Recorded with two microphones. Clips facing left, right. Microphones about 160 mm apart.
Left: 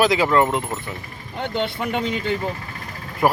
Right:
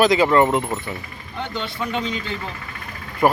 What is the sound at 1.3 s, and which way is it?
Speech, 55° left (ahead or behind).